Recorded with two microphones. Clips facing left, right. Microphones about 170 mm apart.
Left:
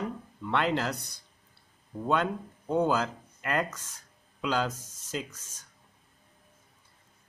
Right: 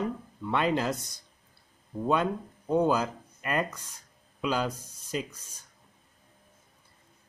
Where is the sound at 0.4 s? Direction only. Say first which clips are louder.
Right 1 dB; 15° right (ahead or behind).